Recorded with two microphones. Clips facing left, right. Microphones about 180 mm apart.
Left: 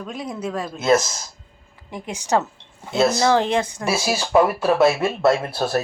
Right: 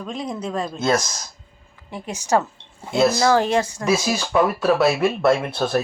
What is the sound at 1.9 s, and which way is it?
Speech, 15° left (ahead or behind).